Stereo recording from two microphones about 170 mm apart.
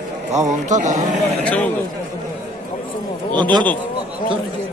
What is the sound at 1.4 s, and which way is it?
Speech, 10° left (ahead or behind).